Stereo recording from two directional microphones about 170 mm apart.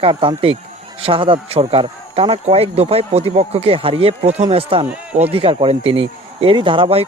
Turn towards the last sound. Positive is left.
turn(degrees=-35)  # may be behind; listen again after turning